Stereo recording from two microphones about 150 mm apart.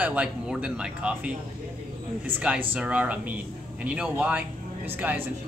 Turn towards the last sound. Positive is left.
turn(degrees=-10)  # may be behind; listen again after turning